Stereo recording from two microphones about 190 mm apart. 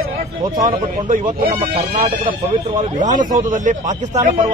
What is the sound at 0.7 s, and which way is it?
A man's voice, 45° right (ahead or behind).